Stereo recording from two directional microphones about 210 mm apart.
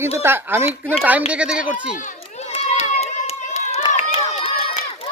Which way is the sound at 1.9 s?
35° left (ahead or behind).